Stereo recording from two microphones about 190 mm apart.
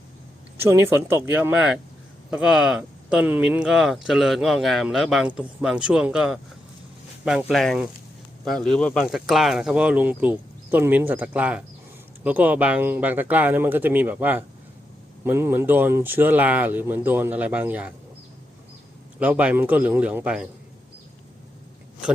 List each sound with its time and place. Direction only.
0.6 s speech: 10° right (ahead or behind)
19.2 s speech: 5° right (ahead or behind)